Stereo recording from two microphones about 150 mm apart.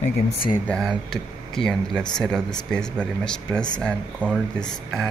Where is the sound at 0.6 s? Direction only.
5° left (ahead or behind).